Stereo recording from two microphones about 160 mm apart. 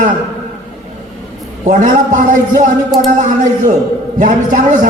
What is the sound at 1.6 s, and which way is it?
A man's voice, 55° right (ahead or behind).